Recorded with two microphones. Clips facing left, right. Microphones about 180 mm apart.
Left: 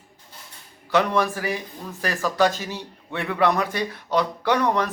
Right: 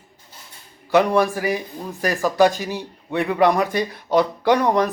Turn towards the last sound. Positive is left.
turn(degrees=-15)  # may be behind; listen again after turning